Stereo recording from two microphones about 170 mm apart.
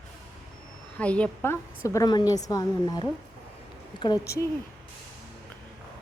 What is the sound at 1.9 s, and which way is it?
A woman's voice, 20° left (ahead or behind).